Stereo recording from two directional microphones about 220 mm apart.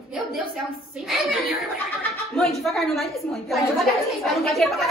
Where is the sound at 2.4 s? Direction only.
Centre (ahead or behind).